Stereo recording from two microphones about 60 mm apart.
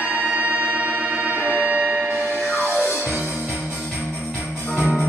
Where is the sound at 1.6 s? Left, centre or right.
Right.